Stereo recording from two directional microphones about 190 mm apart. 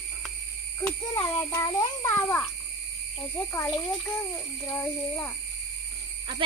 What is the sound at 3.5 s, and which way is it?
Speech, 10° left (ahead or behind).